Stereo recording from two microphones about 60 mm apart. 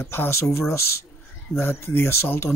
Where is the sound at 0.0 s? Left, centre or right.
Left.